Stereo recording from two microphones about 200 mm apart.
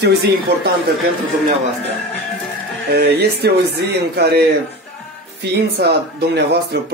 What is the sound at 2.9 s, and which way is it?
Speech, 55° right (ahead or behind).